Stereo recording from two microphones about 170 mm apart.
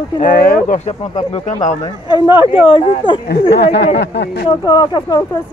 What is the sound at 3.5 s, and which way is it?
Speech, 75° left (ahead or behind).